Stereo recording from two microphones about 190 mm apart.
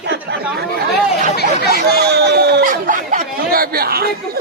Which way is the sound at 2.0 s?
60° right (ahead or behind).